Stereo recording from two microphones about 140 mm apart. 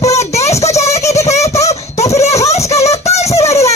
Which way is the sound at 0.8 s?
20° left (ahead or behind).